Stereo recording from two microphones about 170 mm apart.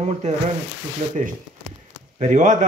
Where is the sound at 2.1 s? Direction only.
45° right (ahead or behind).